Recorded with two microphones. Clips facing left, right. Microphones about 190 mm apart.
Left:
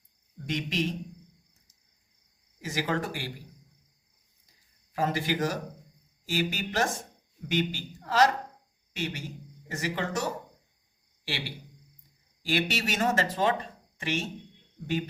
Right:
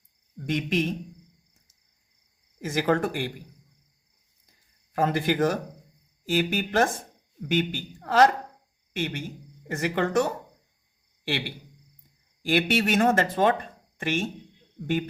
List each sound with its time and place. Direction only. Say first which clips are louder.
0.4 s speech: right 4 dB; 55° right (ahead or behind)
2.6 s speech: right 6 dB; 50° right (ahead or behind)
4.9 s a man's voice: right 5 dB; 55° right (ahead or behind)